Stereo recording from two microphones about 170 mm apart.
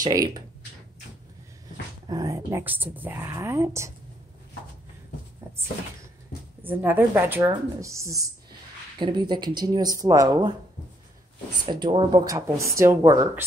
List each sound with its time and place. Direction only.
0.0 s speech: 25° right (ahead or behind)
2.0 s speech: 20° right (ahead or behind)
6.6 s speech: 10° right (ahead or behind)
11.6 s speech: 30° right (ahead or behind)
12.3 s speech: 15° right (ahead or behind)